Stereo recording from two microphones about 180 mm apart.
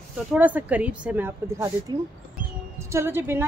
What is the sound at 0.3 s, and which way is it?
A woman's voice, 10° right (ahead or behind).